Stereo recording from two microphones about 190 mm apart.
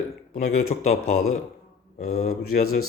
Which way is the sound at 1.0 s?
90° left.